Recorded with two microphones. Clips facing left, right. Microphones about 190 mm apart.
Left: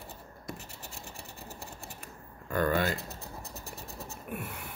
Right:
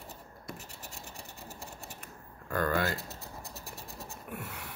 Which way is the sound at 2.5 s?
20° left (ahead or behind).